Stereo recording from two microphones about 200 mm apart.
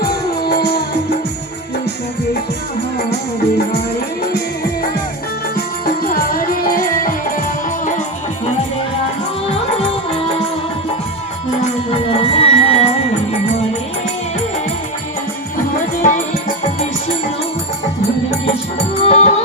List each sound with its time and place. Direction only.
0.1 s music: 50° left (ahead or behind)
5.8 s music: 45° left (ahead or behind)
12.1 s music: 30° left (ahead or behind)
16.0 s music: 40° left (ahead or behind)
19.0 s music: 35° left (ahead or behind)